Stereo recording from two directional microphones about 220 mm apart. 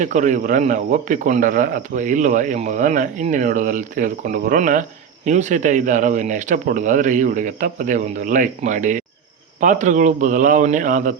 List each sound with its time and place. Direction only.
0.0 s speech: 35° right (ahead or behind)